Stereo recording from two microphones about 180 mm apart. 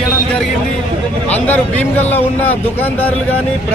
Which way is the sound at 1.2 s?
10° left (ahead or behind).